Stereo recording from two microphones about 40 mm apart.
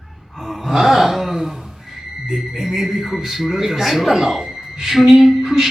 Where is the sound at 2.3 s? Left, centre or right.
Centre.